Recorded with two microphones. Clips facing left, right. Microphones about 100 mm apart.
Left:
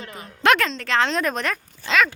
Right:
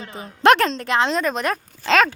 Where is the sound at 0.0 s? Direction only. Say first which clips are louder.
Right 5 dB; 20° right (ahead or behind).